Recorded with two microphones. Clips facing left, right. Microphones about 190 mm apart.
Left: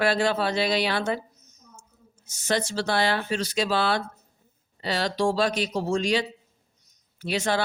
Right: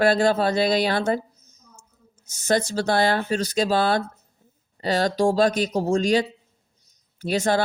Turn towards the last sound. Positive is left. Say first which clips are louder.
# right 4 dB
turn(degrees=-40)  # may be behind; listen again after turning